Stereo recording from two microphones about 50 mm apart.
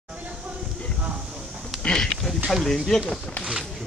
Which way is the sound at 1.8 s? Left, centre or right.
Centre.